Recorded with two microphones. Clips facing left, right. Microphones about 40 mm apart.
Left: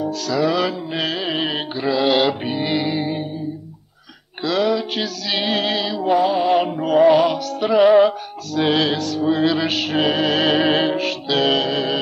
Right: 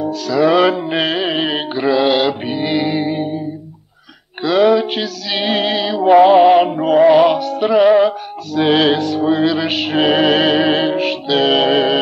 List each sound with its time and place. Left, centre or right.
0.0 s music: centre
0.7 s music: right; by 2.1 s centre
2.1 s music: centre
4.4 s a sound: centre
5.0 s music: centre
6.1 s music: right
6.5 s music: centre
7.0 s music: centre
7.2 s music: right
7.6 s music: centre
9.4 s music: centre
10.4 s music: centre
11.5 s music: right